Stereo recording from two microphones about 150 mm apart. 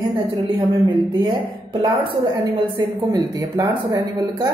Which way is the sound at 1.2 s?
30° right (ahead or behind).